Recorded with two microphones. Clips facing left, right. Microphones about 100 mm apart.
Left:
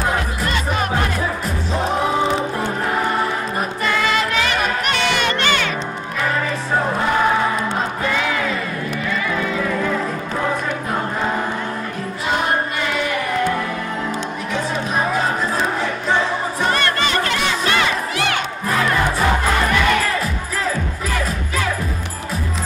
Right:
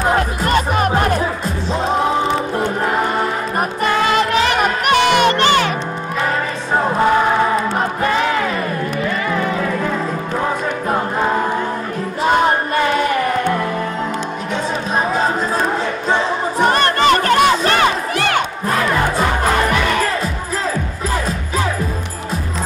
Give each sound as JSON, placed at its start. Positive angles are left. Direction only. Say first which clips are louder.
{"t": 0.5, "sound": "music", "louder": "right 6 dB", "side_deg": -45}
{"t": 3.8, "sound": "music", "louder": "right 4 dB", "side_deg": -40}
{"t": 5.4, "sound": "music", "louder": "right 5 dB", "side_deg": -35}
{"t": 16.7, "sound": "music", "louder": "right 6 dB", "side_deg": -50}